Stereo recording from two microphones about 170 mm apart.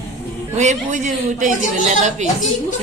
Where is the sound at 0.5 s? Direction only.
45° right (ahead or behind).